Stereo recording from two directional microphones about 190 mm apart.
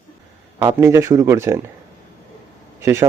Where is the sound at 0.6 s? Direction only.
15° right (ahead or behind).